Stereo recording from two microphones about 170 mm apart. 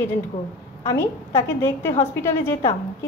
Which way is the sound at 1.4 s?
15° left (ahead or behind).